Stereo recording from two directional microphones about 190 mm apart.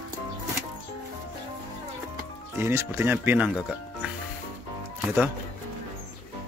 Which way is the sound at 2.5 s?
15° right (ahead or behind).